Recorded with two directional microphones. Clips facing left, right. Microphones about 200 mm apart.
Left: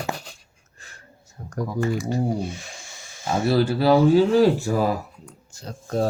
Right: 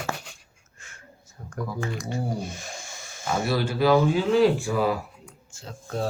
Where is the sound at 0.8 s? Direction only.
35° left (ahead or behind).